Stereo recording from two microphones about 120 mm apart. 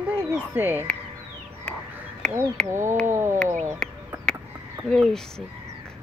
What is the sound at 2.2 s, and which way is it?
Speech, 5° left (ahead or behind).